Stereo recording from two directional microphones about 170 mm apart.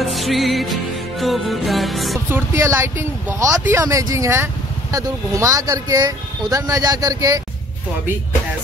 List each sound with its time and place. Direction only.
0.0 s music: centre (ahead or behind)
2.2 s speech: 15° right (ahead or behind)